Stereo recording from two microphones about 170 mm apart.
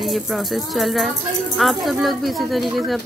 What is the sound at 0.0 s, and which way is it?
Speech, centre (ahead or behind).